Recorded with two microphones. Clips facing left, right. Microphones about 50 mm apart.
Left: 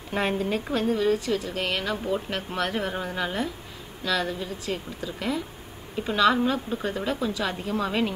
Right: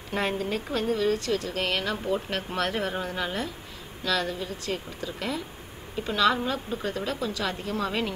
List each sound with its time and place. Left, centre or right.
0.1 s a woman's voice: centre